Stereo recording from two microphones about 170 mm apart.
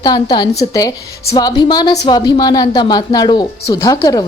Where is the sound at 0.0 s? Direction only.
25° left (ahead or behind).